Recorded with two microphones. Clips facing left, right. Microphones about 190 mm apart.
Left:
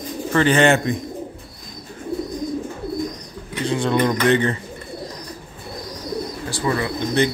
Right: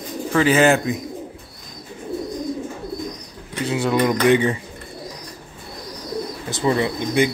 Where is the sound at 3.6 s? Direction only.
5° right (ahead or behind).